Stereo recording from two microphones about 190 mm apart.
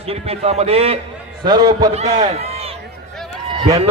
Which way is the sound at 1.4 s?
20° right (ahead or behind).